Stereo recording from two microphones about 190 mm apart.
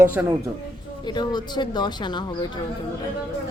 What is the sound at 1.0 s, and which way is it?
A woman's voice, 20° left (ahead or behind).